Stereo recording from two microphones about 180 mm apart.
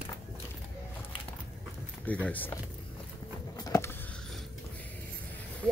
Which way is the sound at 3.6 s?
15° left (ahead or behind).